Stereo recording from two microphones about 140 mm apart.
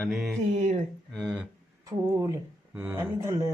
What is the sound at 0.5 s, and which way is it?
Speech, 60° right (ahead or behind).